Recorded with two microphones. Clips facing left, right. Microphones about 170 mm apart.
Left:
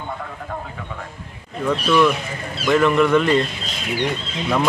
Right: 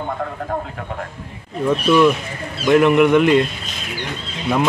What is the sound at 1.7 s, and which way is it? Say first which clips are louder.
Speech: right 3 dB; 15° right (ahead or behind).